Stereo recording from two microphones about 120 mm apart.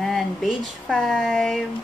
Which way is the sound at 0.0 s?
Centre (ahead or behind).